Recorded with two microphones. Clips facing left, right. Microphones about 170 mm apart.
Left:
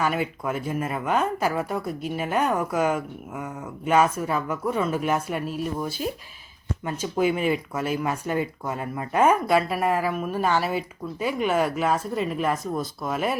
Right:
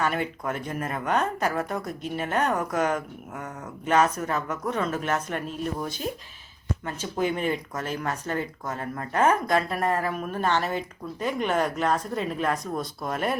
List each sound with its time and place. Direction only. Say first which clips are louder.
0.0 s speech: left 2 dB; 5° left (ahead or behind)